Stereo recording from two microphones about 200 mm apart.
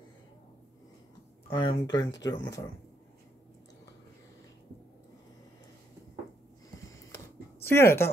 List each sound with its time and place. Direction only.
1.5 s speech: 20° left (ahead or behind)
7.6 s speech: 10° left (ahead or behind)